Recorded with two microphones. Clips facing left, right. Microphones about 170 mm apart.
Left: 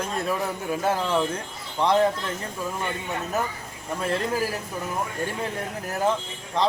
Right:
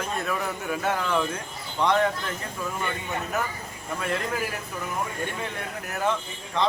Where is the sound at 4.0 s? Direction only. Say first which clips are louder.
Left 3 dB; 30° left (ahead or behind).